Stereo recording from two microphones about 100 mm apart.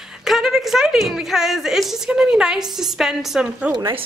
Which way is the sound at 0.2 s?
5° right (ahead or behind).